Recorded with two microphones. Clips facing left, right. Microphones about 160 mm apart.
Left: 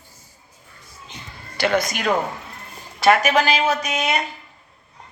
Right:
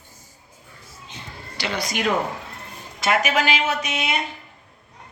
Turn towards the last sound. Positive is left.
turn(degrees=40)  # may be behind; listen again after turning